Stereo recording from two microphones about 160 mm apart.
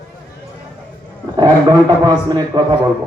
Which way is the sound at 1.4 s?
25° right (ahead or behind).